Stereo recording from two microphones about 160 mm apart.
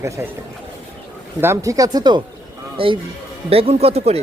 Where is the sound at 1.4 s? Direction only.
20° right (ahead or behind); by 4.2 s 40° right (ahead or behind).